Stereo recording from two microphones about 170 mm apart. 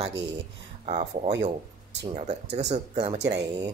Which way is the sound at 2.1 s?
40° right (ahead or behind).